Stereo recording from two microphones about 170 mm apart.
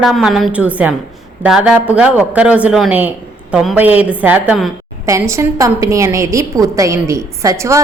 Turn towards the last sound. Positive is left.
turn(degrees=-15)  # may be behind; listen again after turning